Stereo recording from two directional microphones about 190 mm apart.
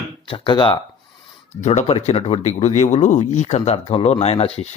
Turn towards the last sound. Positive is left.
turn(degrees=35)  # may be behind; listen again after turning